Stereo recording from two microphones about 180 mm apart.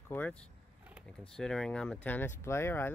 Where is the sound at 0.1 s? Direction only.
10° left (ahead or behind).